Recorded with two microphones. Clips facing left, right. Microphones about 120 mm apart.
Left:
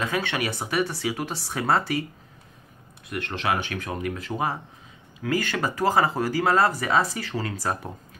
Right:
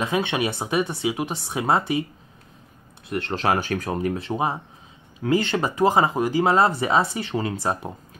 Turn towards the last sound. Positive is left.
turn(degrees=-20)  # may be behind; listen again after turning